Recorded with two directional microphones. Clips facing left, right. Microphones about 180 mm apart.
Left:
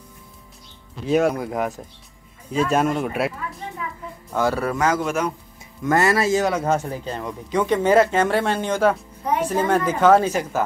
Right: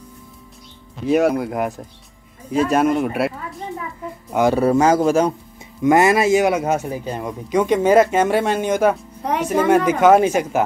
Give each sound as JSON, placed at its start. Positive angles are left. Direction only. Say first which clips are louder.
{"t": 1.0, "sound": "speech", "louder": "right 3 dB", "side_deg": -5}
{"t": 2.7, "sound": "speech", "louder": "right 4 dB", "side_deg": 0}
{"t": 4.3, "sound": "a man's voice", "louder": "right 6 dB", "side_deg": -20}
{"t": 5.8, "sound": "a man's voice", "louder": "right 5 dB", "side_deg": -15}
{"t": 9.2, "sound": "music", "louder": "right 2 dB", "side_deg": -75}
{"t": 9.9, "sound": "a man's voice", "louder": "right 3 dB", "side_deg": -15}